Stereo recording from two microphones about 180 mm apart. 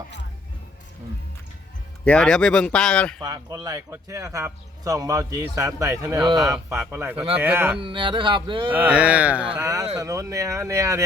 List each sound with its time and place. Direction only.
2.0 s speech: 5° left (ahead or behind)
3.2 s speech: 20° right (ahead or behind)
6.3 s speech: centre (ahead or behind)
7.8 s speech: 30° right (ahead or behind)
8.7 s speech: 10° right (ahead or behind)
9.6 s speech: 20° right (ahead or behind)